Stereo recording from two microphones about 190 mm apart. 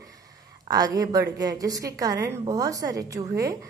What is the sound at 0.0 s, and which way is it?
A woman's voice, 20° right (ahead or behind).